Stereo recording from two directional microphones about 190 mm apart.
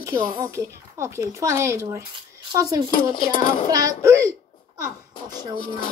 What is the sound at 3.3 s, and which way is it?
Speech, 45° left (ahead or behind).